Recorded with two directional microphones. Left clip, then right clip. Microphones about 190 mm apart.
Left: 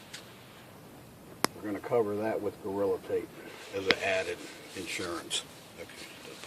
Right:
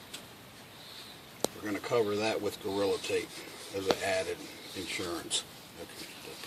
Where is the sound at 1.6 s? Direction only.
30° right (ahead or behind).